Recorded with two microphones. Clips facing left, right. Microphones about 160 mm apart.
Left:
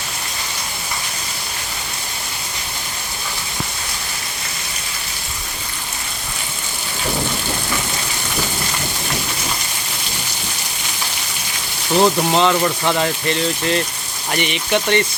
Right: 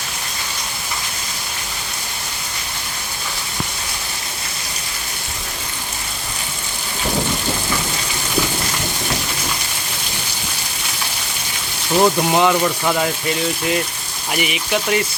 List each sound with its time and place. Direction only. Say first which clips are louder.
11.9 s speech: even; 10° right (ahead or behind)